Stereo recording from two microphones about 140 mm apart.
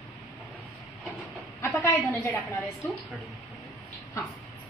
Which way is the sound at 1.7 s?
15° left (ahead or behind).